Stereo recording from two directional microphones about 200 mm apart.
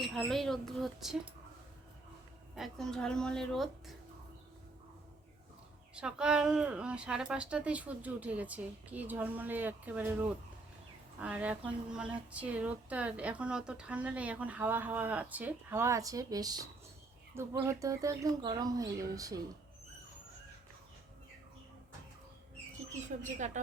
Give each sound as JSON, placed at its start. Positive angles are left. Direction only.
{"t": 0.0, "sound": "a woman's voice", "side_deg": 0}
{"t": 2.6, "sound": "a woman's voice", "side_deg": 5}
{"t": 5.9, "sound": "speech", "side_deg": -5}
{"t": 22.9, "sound": "speech", "side_deg": -40}